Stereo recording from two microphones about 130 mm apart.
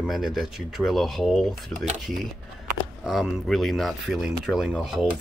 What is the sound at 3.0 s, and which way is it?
Speech, centre (ahead or behind).